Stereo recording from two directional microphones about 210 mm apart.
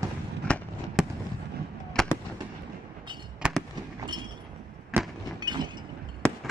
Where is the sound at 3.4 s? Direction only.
Centre (ahead or behind).